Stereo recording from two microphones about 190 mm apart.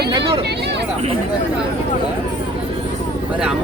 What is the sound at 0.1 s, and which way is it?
Speech, 25° right (ahead or behind).